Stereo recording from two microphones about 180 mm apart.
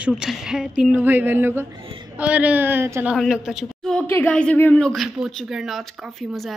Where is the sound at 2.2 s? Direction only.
5° right (ahead or behind).